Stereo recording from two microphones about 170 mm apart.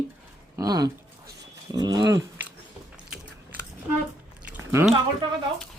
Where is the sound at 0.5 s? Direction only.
20° right (ahead or behind).